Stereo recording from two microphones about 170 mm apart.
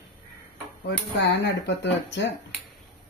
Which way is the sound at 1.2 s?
90° left.